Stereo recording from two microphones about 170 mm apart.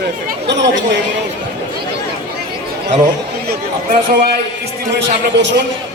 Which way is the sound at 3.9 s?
55° right (ahead or behind).